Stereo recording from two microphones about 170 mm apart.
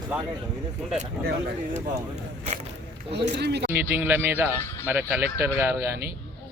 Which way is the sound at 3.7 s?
10° right (ahead or behind).